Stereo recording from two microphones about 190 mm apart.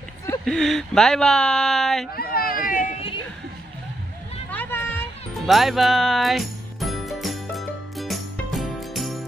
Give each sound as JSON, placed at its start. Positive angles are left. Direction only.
{"t": 0.5, "sound": "speech", "side_deg": 0}
{"t": 2.1, "sound": "speech", "side_deg": 50}
{"t": 4.5, "sound": "a sound", "side_deg": 10}
{"t": 5.5, "sound": "music", "side_deg": 0}